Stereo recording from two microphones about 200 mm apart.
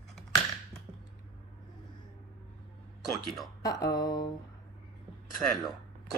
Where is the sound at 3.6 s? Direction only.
20° left (ahead or behind).